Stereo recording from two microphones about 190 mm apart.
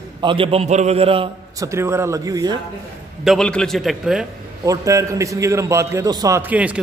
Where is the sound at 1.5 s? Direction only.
15° right (ahead or behind).